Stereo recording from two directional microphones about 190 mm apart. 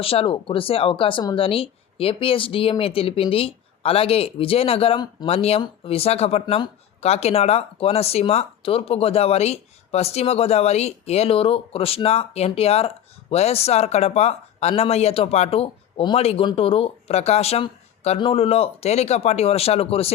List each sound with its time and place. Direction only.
0.0 s speech: 30° left (ahead or behind)